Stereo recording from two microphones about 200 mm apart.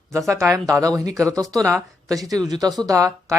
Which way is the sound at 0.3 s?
15° right (ahead or behind).